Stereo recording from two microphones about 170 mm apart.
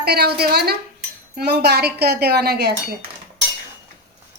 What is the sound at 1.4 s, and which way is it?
Dishes, 75° right (ahead or behind).